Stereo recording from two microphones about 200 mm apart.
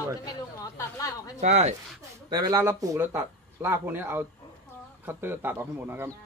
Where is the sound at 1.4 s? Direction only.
35° right (ahead or behind).